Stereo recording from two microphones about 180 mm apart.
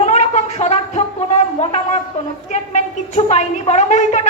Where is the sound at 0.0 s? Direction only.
40° left (ahead or behind).